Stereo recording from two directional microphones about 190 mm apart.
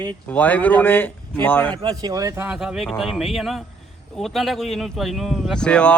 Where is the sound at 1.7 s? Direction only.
20° right (ahead or behind).